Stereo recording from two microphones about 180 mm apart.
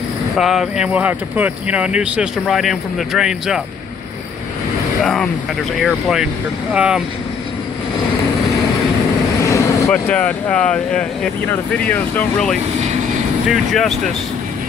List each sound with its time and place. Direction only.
0.4 s speech: centre (ahead or behind)
5.0 s speech: centre (ahead or behind)
9.5 s vehicle: 15° left (ahead or behind)
10.0 s speech: 5° left (ahead or behind)